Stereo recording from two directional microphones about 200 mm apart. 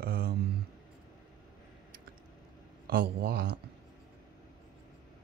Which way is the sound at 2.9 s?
50° right (ahead or behind).